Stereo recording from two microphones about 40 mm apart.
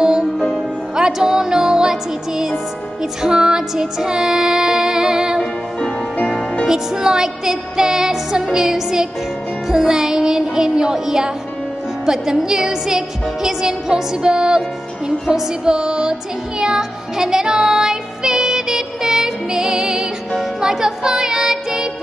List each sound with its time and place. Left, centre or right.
0.0 s music: centre
6.7 s music: centre